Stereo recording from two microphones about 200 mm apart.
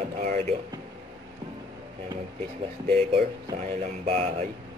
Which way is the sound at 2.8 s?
35° right (ahead or behind).